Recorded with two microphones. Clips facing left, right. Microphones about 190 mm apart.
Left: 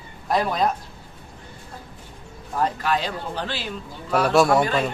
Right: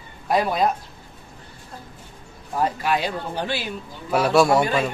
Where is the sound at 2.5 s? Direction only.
10° right (ahead or behind).